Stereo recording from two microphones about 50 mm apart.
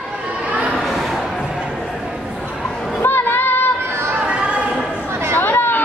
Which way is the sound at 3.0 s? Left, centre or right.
Left.